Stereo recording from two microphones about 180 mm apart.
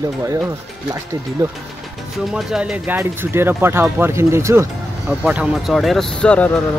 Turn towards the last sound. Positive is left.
turn(degrees=5)  # may be behind; listen again after turning